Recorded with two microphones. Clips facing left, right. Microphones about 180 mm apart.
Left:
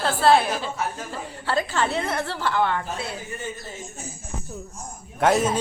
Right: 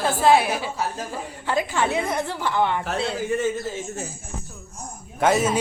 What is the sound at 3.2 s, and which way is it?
Speech, 90° right.